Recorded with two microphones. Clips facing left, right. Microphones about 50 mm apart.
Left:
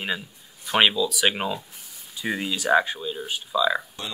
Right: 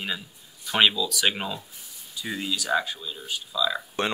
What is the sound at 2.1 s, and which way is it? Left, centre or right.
Speech, left.